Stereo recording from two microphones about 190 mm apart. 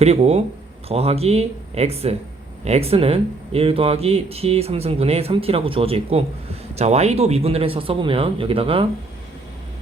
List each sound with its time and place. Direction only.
0.0 s speech: 35° right (ahead or behind)